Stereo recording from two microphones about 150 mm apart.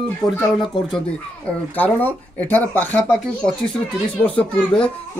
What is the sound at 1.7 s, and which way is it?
Speech, 10° left (ahead or behind).